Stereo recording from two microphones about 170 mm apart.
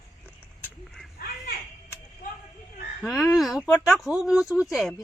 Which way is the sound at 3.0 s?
Centre (ahead or behind).